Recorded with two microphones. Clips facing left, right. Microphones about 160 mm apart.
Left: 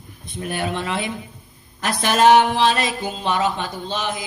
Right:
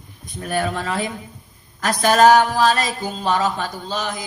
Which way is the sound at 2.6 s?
40° right (ahead or behind).